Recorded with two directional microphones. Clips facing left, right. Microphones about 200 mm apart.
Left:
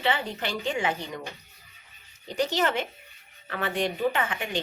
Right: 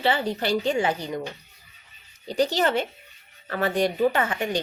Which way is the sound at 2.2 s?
35° right (ahead or behind).